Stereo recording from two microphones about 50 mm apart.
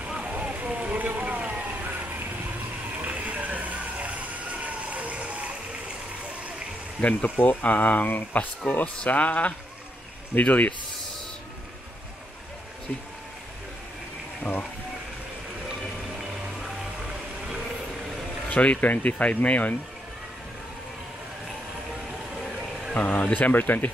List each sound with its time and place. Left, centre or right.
0.1 s vehicle: right
7.0 s speech: left
7.2 s speech: left
7.6 s speech: left
15.7 s music: centre
18.5 s speech: left
22.9 s speech: left